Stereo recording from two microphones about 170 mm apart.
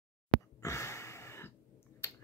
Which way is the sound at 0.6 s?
15° left (ahead or behind).